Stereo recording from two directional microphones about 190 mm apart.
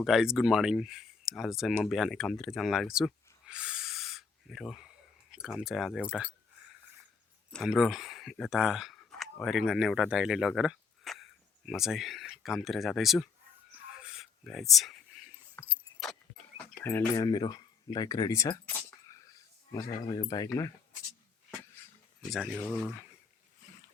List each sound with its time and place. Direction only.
0.0 s speech: centre (ahead or behind)
7.5 s speech: centre (ahead or behind)
13.9 s a sound: 5° right (ahead or behind)
15.6 s keys jangling: 10° left (ahead or behind)
16.7 s speech: 10° left (ahead or behind)
19.7 s speech: 20° left (ahead or behind)
22.3 s speech: centre (ahead or behind)